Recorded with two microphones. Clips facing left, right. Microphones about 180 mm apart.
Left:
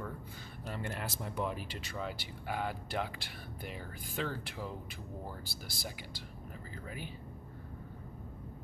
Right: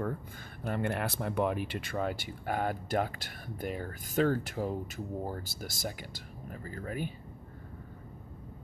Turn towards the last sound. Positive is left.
turn(degrees=-50)  # may be behind; listen again after turning